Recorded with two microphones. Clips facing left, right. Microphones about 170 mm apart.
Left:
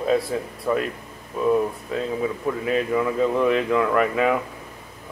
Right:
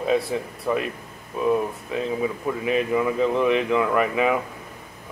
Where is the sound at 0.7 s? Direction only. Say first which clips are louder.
Left 1 dB; 10° right (ahead or behind).